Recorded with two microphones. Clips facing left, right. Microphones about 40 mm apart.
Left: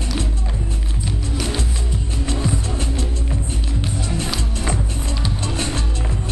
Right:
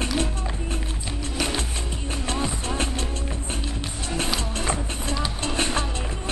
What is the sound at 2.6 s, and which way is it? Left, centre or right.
Music, right.